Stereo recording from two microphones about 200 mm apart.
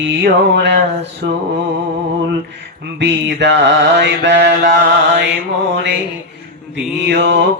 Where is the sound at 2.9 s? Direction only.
60° right (ahead or behind).